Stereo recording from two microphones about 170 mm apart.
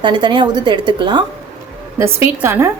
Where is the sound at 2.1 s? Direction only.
15° right (ahead or behind).